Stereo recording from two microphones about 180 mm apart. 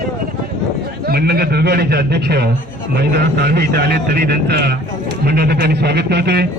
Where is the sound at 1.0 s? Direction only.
60° right (ahead or behind).